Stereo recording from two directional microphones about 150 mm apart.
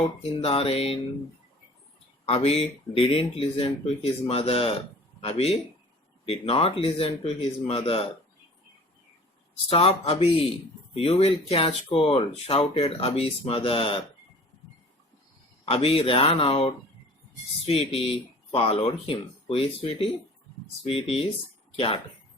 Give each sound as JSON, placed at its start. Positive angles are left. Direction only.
{"t": 0.0, "sound": "speech", "side_deg": 40}
{"t": 2.2, "sound": "speech", "side_deg": 40}
{"t": 9.6, "sound": "speech", "side_deg": 40}
{"t": 15.6, "sound": "speech", "side_deg": 40}